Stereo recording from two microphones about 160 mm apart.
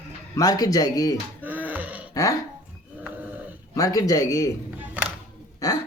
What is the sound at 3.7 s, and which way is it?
Speech, 20° left (ahead or behind).